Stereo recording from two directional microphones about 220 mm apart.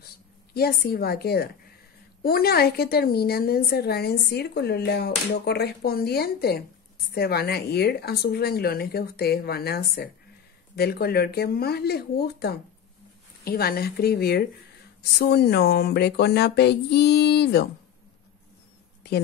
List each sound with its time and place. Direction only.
0.6 s a woman's voice: 45° left (ahead or behind)